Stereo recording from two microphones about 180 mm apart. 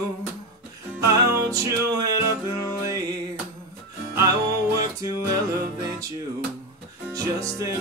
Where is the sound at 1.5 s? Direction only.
20° right (ahead or behind).